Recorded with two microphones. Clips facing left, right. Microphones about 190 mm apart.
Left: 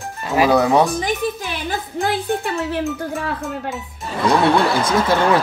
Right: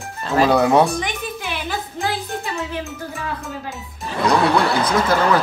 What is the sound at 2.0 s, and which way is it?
Speech, 60° left (ahead or behind).